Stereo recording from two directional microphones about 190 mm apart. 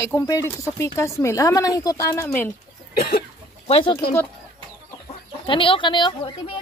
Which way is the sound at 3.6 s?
30° left (ahead or behind).